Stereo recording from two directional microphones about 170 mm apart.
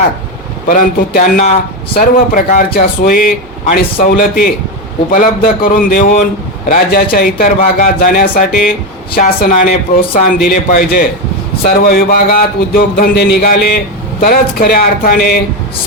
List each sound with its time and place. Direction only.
0.7 s speech: 55° left (ahead or behind)